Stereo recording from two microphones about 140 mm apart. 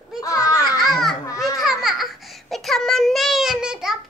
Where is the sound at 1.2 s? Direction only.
25° left (ahead or behind).